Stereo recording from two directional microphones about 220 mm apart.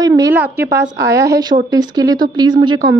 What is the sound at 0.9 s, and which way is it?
A woman's voice, 15° right (ahead or behind).